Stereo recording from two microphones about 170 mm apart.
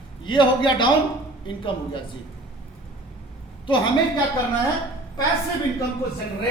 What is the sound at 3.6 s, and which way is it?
Speech, 30° left (ahead or behind).